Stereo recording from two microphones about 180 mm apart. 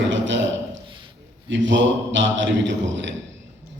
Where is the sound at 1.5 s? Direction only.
90° right.